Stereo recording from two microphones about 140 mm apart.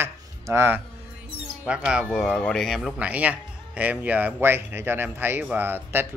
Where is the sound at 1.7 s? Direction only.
5° right (ahead or behind).